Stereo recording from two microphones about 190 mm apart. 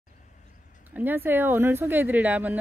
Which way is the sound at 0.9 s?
10° right (ahead or behind).